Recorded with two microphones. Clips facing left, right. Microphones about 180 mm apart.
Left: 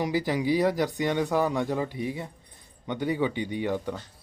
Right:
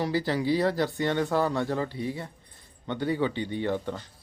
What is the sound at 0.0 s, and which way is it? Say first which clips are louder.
Speech: even; 15° left (ahead or behind).